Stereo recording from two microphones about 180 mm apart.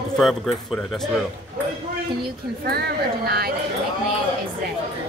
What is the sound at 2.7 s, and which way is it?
Speech, 60° right (ahead or behind).